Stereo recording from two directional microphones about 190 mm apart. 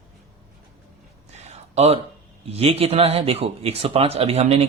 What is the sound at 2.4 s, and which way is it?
Speech, 30° right (ahead or behind).